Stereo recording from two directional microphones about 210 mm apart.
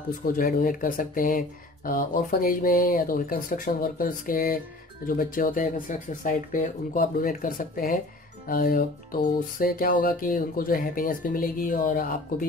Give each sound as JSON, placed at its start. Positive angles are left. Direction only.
{"t": 0.3, "sound": "speech", "side_deg": 40}
{"t": 8.5, "sound": "music", "side_deg": 45}